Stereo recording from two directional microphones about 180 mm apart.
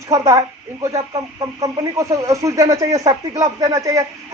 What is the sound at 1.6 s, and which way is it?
Speech, 20° right (ahead or behind).